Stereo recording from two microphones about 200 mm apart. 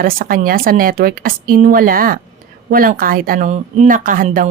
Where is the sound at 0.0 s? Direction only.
45° right (ahead or behind).